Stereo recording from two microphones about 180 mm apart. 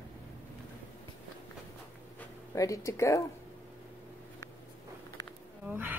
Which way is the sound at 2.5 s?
15° left (ahead or behind).